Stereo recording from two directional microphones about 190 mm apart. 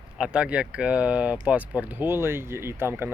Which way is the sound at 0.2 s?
5° right (ahead or behind).